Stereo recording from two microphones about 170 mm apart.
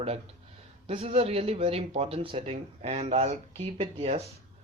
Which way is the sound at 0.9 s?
35° right (ahead or behind).